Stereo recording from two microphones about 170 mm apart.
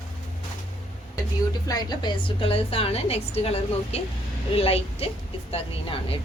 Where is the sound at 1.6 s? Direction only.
25° left (ahead or behind).